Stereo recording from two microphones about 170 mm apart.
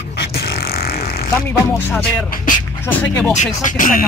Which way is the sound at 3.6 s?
50° left (ahead or behind).